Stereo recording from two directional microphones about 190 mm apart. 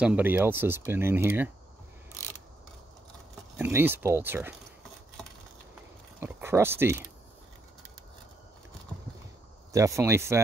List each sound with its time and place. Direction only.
0.0 s speech: 10° right (ahead or behind)
3.5 s speech: 10° right (ahead or behind)
6.2 s speech: 10° right (ahead or behind)
9.7 s speech: 15° right (ahead or behind)